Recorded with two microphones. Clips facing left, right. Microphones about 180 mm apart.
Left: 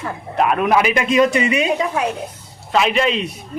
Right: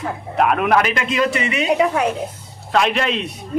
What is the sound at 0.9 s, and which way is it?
Speech, 20° left (ahead or behind).